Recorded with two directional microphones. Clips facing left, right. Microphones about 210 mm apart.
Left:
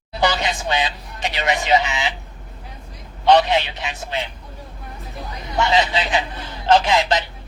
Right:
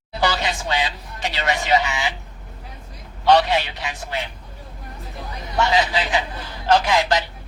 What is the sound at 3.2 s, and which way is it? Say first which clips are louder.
Speech: left 1 dB; 20° left (ahead or behind).